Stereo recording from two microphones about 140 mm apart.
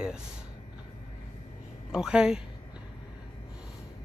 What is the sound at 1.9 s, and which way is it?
Speech, 5° right (ahead or behind).